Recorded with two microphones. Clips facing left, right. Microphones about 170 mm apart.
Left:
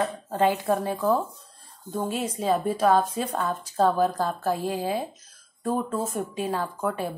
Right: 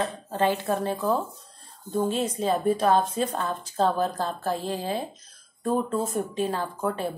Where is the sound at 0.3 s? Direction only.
15° left (ahead or behind).